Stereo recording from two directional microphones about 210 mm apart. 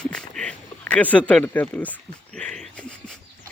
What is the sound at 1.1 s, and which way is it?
Speech, 5° left (ahead or behind).